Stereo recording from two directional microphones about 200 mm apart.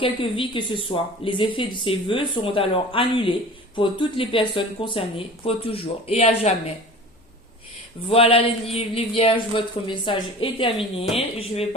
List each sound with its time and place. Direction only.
0.0 s speech: 25° left (ahead or behind)
8.1 s speech: 30° left (ahead or behind)